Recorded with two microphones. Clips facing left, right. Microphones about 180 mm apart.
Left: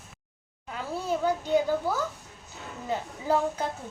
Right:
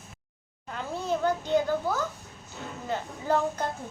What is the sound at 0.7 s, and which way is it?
A child's voice, 5° left (ahead or behind).